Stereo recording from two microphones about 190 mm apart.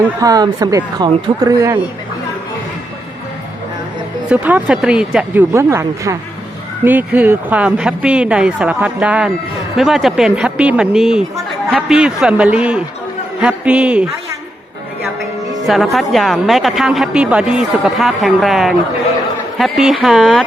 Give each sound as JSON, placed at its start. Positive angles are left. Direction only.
{"t": 0.2, "sound": "speech", "side_deg": -20}
{"t": 4.3, "sound": "a woman's voice", "side_deg": -5}
{"t": 15.6, "sound": "a woman's voice", "side_deg": 0}